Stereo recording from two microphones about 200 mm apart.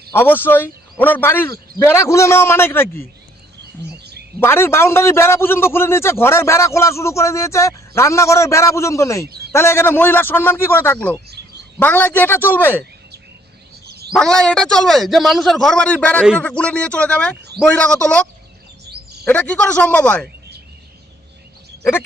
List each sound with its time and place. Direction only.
0.1 s a man's voice: 10° left (ahead or behind)
4.4 s a man's voice: 10° left (ahead or behind)
9.2 s a man's voice: 55° right (ahead or behind)
9.5 s a man's voice: 15° left (ahead or behind)
13.8 s bird: 50° right (ahead or behind)
14.1 s a man's voice: 5° left (ahead or behind)
19.2 s a man's voice: 5° left (ahead or behind)